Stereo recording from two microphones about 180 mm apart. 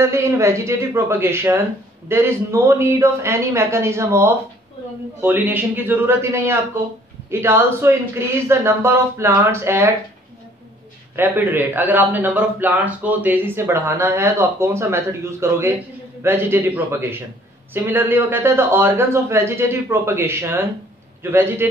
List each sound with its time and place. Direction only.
0.0 s a man's voice: 15° right (ahead or behind)
11.1 s a man's voice: 10° right (ahead or behind)